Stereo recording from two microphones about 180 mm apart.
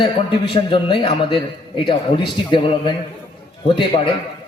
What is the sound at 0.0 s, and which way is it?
A man's voice, 30° left (ahead or behind).